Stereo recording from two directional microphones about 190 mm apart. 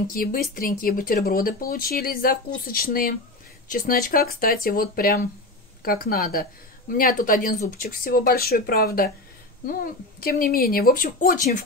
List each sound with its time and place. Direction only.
0.1 s speech: 50° left (ahead or behind)